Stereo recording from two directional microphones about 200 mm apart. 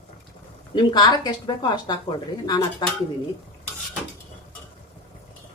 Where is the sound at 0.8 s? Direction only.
20° left (ahead or behind).